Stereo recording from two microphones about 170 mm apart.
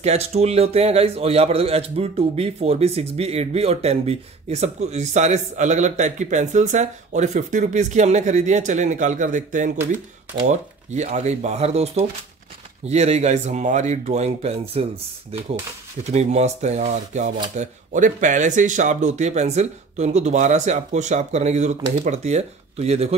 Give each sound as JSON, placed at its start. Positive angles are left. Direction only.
{"t": 0.0, "sound": "a man's voice", "side_deg": -40}
{"t": 16.0, "sound": "a man's voice", "side_deg": -40}